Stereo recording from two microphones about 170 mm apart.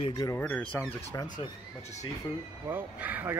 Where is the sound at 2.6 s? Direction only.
10° right (ahead or behind).